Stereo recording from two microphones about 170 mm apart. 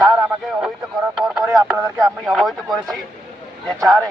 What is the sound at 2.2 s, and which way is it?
Speech, centre (ahead or behind).